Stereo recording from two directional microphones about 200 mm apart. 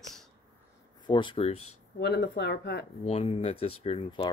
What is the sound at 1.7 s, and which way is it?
Speech, 55° left (ahead or behind).